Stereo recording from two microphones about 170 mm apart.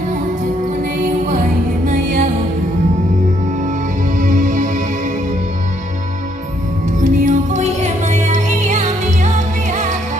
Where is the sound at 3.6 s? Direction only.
50° right (ahead or behind).